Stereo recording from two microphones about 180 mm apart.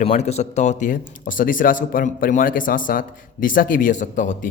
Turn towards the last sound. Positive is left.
turn(degrees=45)  # may be behind; listen again after turning